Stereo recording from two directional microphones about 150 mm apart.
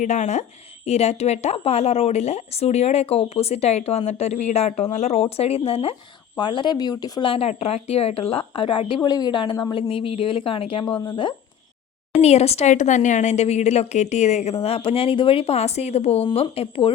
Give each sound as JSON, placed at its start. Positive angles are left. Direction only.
{"t": 0.0, "sound": "a woman's voice", "side_deg": 55}
{"t": 12.2, "sound": "a woman's voice", "side_deg": 45}